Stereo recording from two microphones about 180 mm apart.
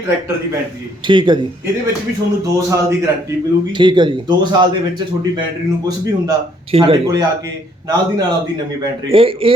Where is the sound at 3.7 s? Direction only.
25° right (ahead or behind).